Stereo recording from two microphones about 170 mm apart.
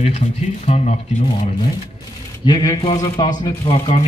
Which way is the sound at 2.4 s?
20° left (ahead or behind).